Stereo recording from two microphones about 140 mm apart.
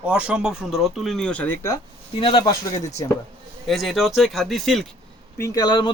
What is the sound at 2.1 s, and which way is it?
Speech, 40° left (ahead or behind).